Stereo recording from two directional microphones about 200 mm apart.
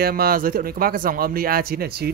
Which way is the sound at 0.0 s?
50° right (ahead or behind).